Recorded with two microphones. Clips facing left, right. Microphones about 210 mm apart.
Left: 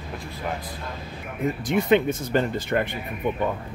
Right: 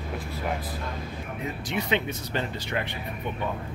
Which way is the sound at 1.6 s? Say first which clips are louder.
Left 8 dB; 50° left (ahead or behind).